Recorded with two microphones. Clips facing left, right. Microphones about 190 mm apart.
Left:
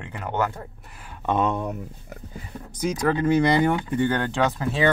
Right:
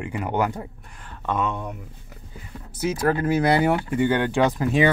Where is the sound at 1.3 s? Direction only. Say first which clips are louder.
Left 3 dB; 35° left (ahead or behind).